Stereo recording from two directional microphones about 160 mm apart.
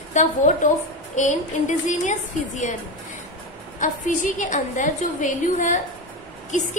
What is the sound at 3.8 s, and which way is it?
A woman's voice, 50° left (ahead or behind).